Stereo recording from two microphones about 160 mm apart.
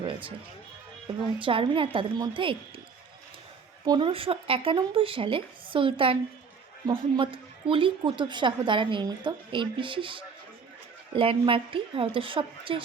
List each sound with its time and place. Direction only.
0.0 s a woman's voice: 35° right (ahead or behind)
3.8 s a woman's voice: 30° right (ahead or behind)